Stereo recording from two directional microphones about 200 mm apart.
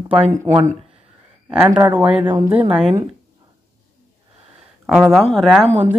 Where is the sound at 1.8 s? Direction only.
10° right (ahead or behind).